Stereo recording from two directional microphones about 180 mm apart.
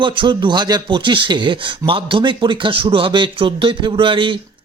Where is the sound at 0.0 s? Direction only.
25° right (ahead or behind).